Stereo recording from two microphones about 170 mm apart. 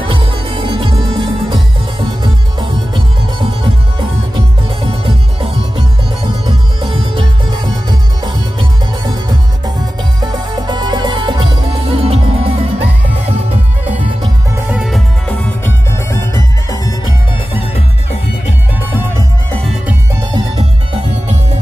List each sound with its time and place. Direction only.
0.0 s music: 30° right (ahead or behind)
4.8 s music: 30° right (ahead or behind)
14.7 s music: 5° right (ahead or behind)
15.2 s music: 10° left (ahead or behind)
16.7 s music: 20° left (ahead or behind)